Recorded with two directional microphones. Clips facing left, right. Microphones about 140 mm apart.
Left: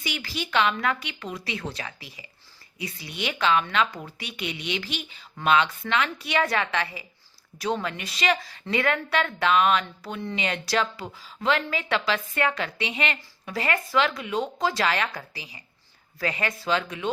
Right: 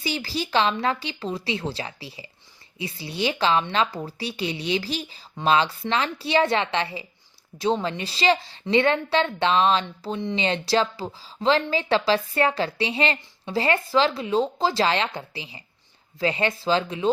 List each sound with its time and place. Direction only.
0.0 s a woman's voice: 30° right (ahead or behind)